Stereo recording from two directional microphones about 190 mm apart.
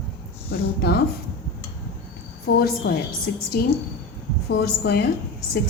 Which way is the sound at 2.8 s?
65° left (ahead or behind).